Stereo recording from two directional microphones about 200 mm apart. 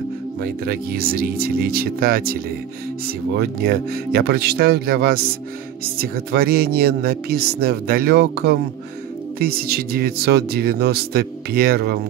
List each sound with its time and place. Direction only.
0.4 s speech: 50° right (ahead or behind)
3.3 s speech: 50° right (ahead or behind)